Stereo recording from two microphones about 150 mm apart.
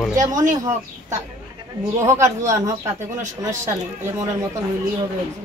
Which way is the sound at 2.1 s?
20° right (ahead or behind).